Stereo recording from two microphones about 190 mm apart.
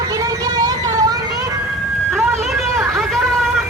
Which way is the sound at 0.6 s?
20° right (ahead or behind).